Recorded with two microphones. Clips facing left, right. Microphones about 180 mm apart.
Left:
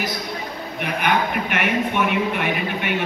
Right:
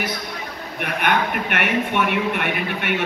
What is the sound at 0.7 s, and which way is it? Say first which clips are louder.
Speech: even; 55° right (ahead or behind).